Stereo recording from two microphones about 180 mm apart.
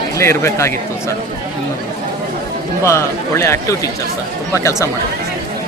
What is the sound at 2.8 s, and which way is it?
Speech, 15° left (ahead or behind).